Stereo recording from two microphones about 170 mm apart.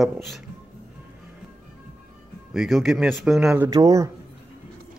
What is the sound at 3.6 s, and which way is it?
Speech, 20° right (ahead or behind).